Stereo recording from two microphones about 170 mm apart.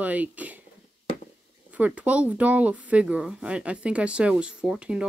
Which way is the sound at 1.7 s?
10° right (ahead or behind).